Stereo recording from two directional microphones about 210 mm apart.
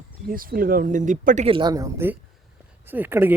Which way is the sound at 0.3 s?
45° right (ahead or behind).